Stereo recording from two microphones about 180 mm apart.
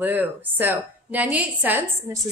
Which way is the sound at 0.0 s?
10° right (ahead or behind).